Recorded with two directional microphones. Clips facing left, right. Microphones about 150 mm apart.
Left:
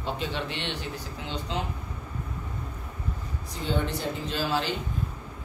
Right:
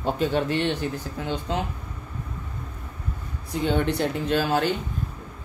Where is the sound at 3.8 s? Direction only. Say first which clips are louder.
Right 6 dB; 65° right (ahead or behind).